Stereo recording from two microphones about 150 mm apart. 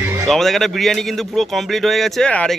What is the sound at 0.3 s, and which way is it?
Speech, centre (ahead or behind).